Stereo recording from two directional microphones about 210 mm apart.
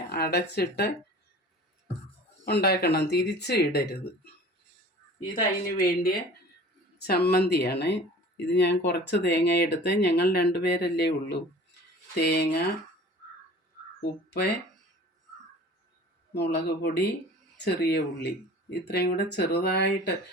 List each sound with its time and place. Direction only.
0.1 s speech: 50° left (ahead or behind)
2.5 s speech: 50° left (ahead or behind)
5.3 s speech: 45° left (ahead or behind)
16.3 s speech: 50° left (ahead or behind)